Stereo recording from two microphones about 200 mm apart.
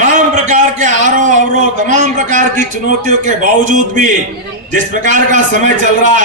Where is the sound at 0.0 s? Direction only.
40° right (ahead or behind).